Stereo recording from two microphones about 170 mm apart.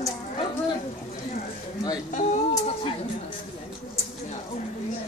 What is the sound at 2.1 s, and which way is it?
Speech, 45° left (ahead or behind).